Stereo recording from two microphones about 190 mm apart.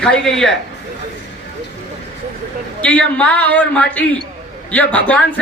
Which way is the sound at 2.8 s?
5° left (ahead or behind).